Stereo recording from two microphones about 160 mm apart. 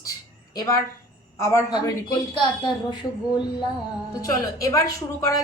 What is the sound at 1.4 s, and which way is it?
A woman's voice, 20° left (ahead or behind).